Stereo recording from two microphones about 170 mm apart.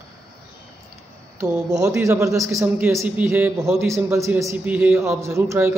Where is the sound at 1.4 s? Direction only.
20° right (ahead or behind).